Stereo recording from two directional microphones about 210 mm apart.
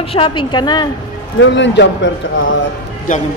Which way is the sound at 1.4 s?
55° left (ahead or behind).